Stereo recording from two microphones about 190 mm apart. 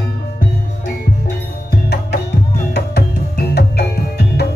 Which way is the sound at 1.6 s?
60° left (ahead or behind).